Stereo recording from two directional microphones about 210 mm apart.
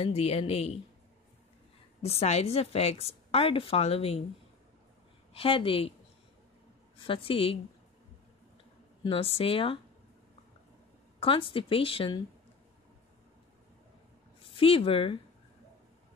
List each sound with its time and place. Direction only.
0.0 s a woman's voice: 30° left (ahead or behind)
2.0 s a woman's voice: 30° left (ahead or behind)
5.3 s a woman's voice: 25° left (ahead or behind)
7.1 s a woman's voice: 25° left (ahead or behind)
9.0 s a woman's voice: 25° left (ahead or behind)
11.1 s a woman's voice: 25° left (ahead or behind)
14.5 s a woman's voice: 25° left (ahead or behind)